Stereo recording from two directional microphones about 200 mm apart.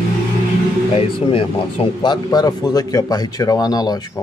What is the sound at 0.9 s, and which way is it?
Speech, 30° left (ahead or behind).